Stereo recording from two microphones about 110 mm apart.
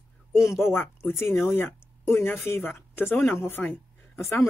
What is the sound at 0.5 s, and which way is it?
Speech, 25° left (ahead or behind).